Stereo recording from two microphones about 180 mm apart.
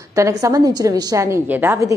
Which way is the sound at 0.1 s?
15° right (ahead or behind).